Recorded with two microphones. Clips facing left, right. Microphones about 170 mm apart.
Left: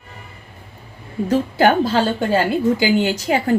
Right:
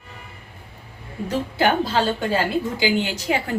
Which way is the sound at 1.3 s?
45° left (ahead or behind).